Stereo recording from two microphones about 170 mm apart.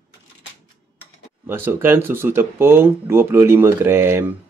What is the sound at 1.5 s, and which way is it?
Speech, 10° right (ahead or behind).